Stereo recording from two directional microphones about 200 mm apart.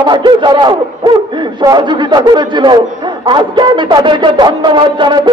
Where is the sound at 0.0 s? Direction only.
20° right (ahead or behind).